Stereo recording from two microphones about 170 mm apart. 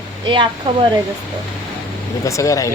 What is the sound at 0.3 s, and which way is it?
Speech, 30° right (ahead or behind).